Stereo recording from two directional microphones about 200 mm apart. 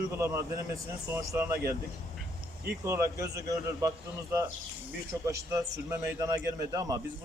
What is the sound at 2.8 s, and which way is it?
A man's voice, 15° right (ahead or behind).